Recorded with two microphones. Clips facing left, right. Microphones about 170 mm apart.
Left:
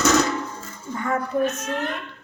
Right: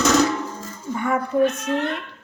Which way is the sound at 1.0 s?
15° right (ahead or behind).